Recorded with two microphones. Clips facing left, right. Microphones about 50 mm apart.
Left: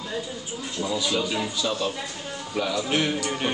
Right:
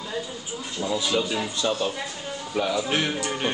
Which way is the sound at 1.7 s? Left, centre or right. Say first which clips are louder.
Right 1 dB; centre.